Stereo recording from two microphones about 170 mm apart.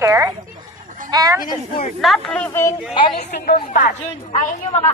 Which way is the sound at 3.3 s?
65° left (ahead or behind).